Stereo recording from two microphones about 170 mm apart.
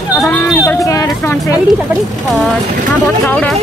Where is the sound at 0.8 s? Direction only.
20° left (ahead or behind).